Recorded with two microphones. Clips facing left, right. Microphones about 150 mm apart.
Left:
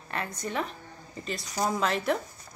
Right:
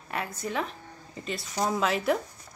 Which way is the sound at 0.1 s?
5° right (ahead or behind).